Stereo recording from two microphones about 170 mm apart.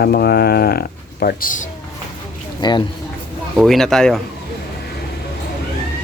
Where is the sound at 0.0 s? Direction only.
70° left (ahead or behind); by 1.6 s 55° left (ahead or behind).